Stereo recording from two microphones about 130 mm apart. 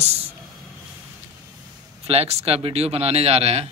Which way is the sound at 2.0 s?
55° right (ahead or behind).